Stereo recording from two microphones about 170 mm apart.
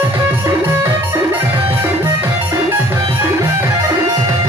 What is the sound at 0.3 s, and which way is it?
Music, 15° right (ahead or behind).